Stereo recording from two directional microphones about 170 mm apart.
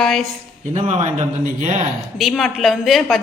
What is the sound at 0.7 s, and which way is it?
A man's voice, 40° right (ahead or behind).